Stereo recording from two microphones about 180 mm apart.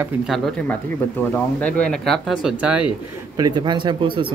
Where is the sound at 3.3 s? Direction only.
20° right (ahead or behind).